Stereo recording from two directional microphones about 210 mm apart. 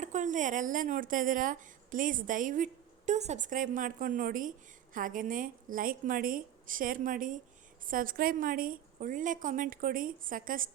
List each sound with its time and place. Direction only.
0.0 s a woman's voice: 35° right (ahead or behind)